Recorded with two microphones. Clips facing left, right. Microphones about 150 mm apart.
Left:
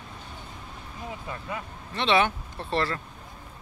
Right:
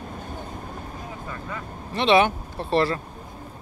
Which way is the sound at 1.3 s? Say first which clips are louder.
Even; 15° left (ahead or behind).